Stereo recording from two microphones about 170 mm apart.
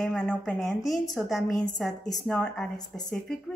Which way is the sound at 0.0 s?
5° left (ahead or behind).